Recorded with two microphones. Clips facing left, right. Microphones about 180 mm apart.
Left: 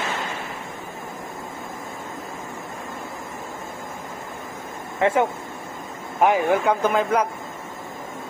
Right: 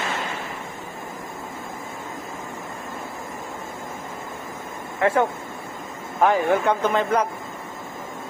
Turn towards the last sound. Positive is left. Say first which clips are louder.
# left 1 dB
turn(degrees=10)  # may be behind; listen again after turning